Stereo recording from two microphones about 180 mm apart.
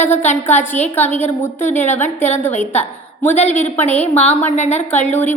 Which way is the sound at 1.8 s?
40° left (ahead or behind).